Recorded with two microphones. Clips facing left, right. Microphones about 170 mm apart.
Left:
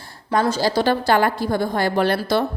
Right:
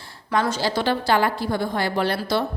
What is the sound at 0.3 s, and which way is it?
A woman's voice, 30° left (ahead or behind).